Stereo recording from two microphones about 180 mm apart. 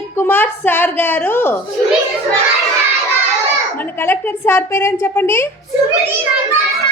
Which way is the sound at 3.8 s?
10° left (ahead or behind).